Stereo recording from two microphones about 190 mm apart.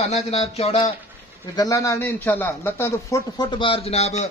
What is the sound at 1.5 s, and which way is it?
Speech, 20° left (ahead or behind).